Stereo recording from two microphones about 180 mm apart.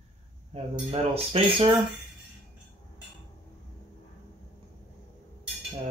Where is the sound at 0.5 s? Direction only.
35° right (ahead or behind).